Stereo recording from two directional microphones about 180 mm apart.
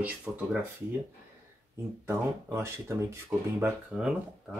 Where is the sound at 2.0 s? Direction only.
15° right (ahead or behind).